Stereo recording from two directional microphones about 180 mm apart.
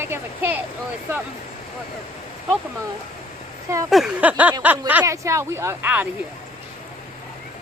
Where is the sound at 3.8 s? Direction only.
Centre (ahead or behind).